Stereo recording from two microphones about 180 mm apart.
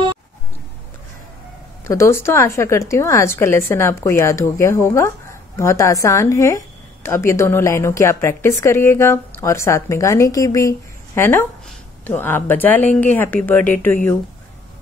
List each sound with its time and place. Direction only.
1.9 s a woman's voice: 15° left (ahead or behind)